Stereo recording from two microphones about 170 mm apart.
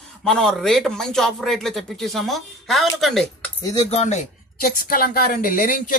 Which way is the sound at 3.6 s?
20° left (ahead or behind).